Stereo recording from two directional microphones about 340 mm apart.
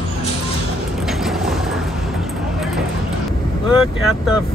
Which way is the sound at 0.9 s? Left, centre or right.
Centre.